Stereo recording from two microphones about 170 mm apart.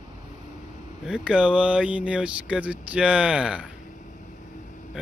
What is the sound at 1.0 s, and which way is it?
Speech, 5° right (ahead or behind).